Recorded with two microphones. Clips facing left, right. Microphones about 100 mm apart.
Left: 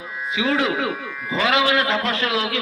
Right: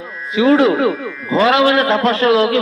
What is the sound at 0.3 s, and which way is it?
A man's voice, 40° right (ahead or behind).